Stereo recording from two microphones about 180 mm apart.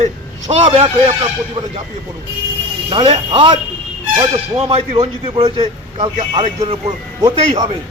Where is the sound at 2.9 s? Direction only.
25° right (ahead or behind).